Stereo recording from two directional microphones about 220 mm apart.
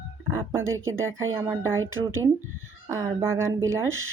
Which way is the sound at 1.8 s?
65° right (ahead or behind).